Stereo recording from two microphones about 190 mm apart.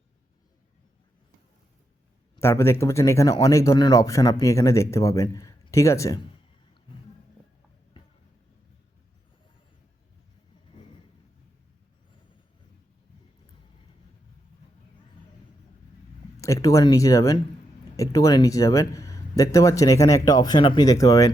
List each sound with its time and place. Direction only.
2.3 s speech: 15° left (ahead or behind)
16.4 s speech: 15° left (ahead or behind)